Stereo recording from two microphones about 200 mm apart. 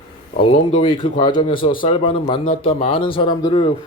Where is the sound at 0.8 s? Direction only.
25° left (ahead or behind).